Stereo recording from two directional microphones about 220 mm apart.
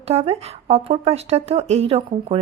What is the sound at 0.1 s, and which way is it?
Speech, 30° right (ahead or behind).